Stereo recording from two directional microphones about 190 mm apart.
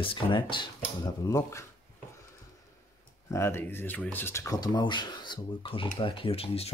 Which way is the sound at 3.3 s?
15° left (ahead or behind).